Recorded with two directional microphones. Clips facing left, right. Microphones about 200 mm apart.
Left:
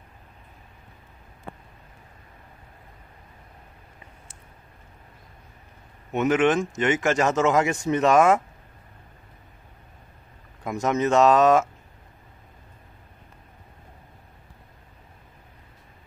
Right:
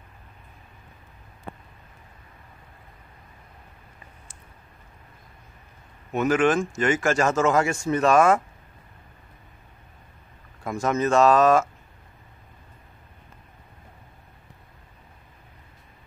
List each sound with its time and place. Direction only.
6.1 s speech: 20° left (ahead or behind)
10.6 s speech: 20° left (ahead or behind)